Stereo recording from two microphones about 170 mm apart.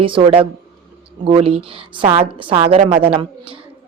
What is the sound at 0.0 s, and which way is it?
A woman's voice, 30° right (ahead or behind).